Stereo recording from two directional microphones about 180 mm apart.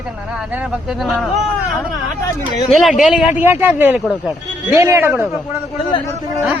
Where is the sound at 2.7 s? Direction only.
Centre (ahead or behind).